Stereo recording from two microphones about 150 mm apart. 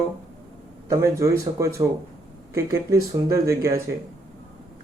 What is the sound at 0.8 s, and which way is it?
Speech, 20° right (ahead or behind).